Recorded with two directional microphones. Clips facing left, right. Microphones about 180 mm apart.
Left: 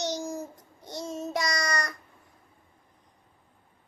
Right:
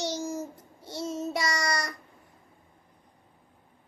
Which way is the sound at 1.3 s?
10° right (ahead or behind).